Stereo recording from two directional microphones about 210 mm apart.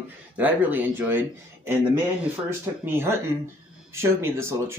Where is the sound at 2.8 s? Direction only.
10° right (ahead or behind).